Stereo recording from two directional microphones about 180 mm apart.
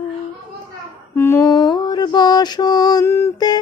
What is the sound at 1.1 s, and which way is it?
Mantra, 15° left (ahead or behind).